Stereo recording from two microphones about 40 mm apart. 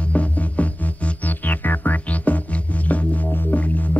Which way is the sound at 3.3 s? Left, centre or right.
Left.